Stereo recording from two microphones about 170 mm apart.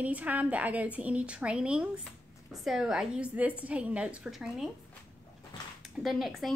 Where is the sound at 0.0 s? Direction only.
10° right (ahead or behind).